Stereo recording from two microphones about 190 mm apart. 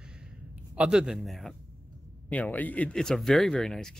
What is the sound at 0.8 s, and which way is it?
Speech, 5° right (ahead or behind).